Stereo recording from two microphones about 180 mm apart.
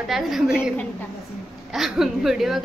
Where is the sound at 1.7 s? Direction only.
Centre (ahead or behind).